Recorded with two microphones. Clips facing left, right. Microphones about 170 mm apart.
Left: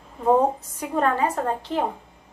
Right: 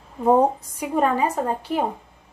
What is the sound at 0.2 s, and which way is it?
A woman's voice, 10° right (ahead or behind).